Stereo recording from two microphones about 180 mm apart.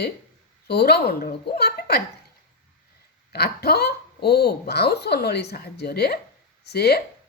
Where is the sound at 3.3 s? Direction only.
60° left (ahead or behind).